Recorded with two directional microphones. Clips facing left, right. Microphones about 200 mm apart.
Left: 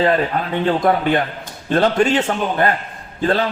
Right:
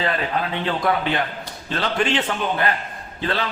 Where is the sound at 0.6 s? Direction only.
45° left (ahead or behind).